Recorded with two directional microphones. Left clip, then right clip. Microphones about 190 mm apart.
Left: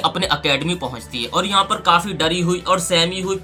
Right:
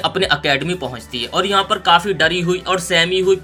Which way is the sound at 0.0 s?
10° right (ahead or behind).